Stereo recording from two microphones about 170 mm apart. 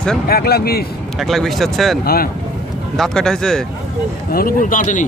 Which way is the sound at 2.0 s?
60° left (ahead or behind).